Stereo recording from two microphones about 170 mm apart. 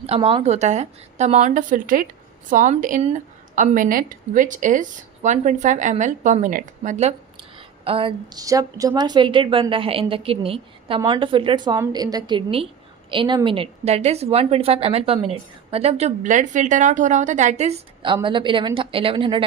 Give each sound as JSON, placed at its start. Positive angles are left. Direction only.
{"t": 0.0, "sound": "a woman's voice", "side_deg": -35}
{"t": 7.9, "sound": "a woman's voice", "side_deg": -30}